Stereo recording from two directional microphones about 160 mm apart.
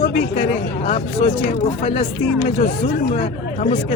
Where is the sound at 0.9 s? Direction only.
45° left (ahead or behind).